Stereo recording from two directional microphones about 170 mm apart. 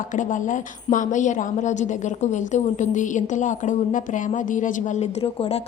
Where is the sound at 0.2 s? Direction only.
50° left (ahead or behind).